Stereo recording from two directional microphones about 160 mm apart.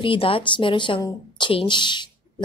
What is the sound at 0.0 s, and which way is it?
Speech, 35° left (ahead or behind).